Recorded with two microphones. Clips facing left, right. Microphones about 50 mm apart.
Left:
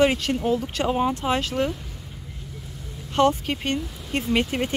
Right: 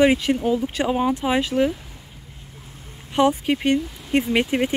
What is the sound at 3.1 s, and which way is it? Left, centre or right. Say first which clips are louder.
Speech: right 2 dB; centre.